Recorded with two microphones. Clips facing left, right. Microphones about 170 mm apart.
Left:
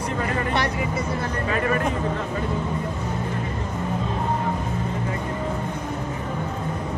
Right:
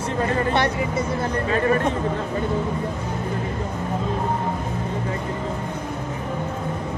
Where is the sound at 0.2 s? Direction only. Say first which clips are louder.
Right 4 dB; 30° right (ahead or behind).